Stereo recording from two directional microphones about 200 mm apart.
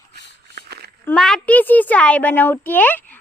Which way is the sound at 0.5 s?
55° right (ahead or behind).